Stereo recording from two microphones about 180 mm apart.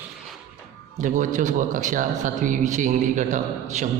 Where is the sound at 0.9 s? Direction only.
45° right (ahead or behind).